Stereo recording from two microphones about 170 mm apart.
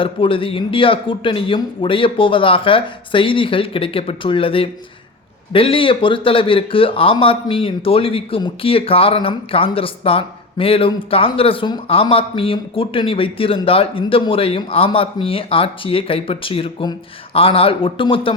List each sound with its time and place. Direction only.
0.0 s speech: 30° left (ahead or behind)